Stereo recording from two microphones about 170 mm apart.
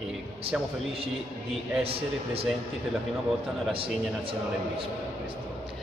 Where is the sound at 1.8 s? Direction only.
35° right (ahead or behind).